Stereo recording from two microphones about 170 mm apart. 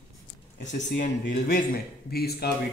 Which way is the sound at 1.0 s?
50° left (ahead or behind).